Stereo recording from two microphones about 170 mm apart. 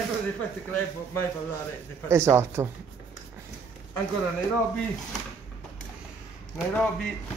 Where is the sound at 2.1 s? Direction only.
15° right (ahead or behind).